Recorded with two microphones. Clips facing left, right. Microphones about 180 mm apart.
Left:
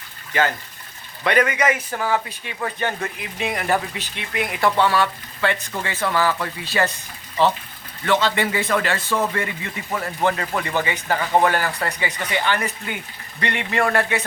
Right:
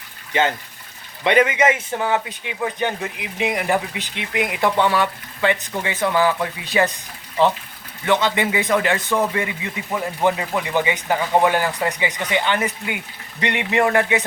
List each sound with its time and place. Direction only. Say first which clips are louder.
0.3 s a man's voice: right 2 dB; 25° right (ahead or behind)